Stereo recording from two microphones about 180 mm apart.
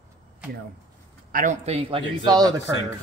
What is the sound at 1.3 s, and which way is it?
Speech, 50° right (ahead or behind).